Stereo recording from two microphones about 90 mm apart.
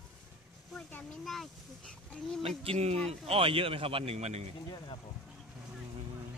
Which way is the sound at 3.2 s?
90° right.